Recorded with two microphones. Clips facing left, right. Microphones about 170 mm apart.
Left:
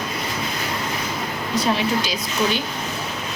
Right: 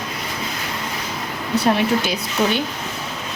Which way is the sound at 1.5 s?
65° right (ahead or behind).